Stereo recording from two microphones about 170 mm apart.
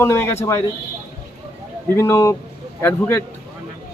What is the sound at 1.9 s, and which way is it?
Speech, 15° left (ahead or behind).